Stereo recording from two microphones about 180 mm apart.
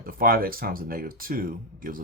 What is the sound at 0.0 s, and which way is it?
Speech, 55° right (ahead or behind).